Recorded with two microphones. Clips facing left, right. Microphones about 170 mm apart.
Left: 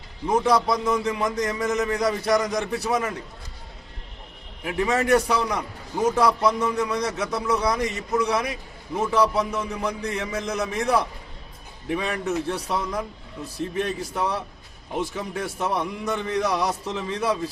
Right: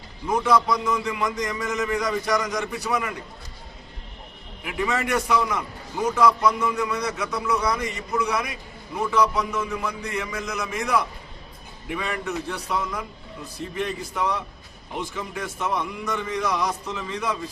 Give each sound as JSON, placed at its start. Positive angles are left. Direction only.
{"t": 0.3, "sound": "a man's voice", "side_deg": 35}
{"t": 4.6, "sound": "a man's voice", "side_deg": 30}